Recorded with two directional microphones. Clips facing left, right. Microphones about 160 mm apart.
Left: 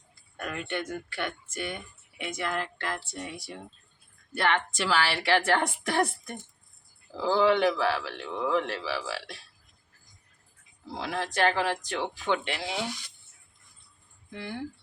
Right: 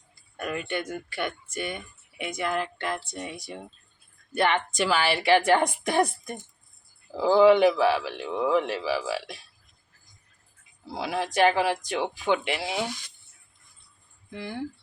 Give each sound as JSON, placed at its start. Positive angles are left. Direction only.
{"t": 0.3, "sound": "speech", "side_deg": -10}
{"t": 10.9, "sound": "speech", "side_deg": -10}